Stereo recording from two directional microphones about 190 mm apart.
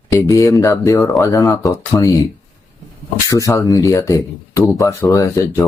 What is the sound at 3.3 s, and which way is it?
Speech, 15° left (ahead or behind).